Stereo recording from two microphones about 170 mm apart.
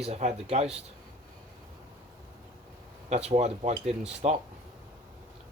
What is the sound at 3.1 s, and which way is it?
Speech, 35° right (ahead or behind).